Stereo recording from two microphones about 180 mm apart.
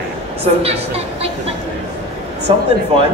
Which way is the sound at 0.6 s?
35° right (ahead or behind).